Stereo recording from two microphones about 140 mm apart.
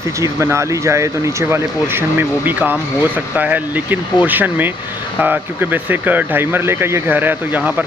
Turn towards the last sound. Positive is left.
turn(degrees=-10)  # may be behind; listen again after turning